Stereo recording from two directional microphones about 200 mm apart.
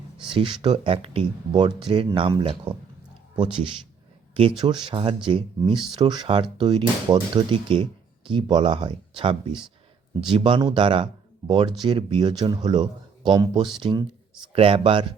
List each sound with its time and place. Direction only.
0.3 s speech: 25° right (ahead or behind)
4.4 s speech: 25° right (ahead or behind)